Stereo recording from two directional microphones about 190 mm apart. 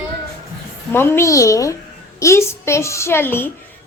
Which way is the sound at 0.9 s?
10° left (ahead or behind).